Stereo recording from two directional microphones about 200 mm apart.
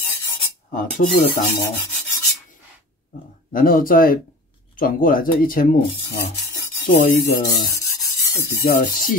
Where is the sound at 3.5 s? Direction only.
45° left (ahead or behind).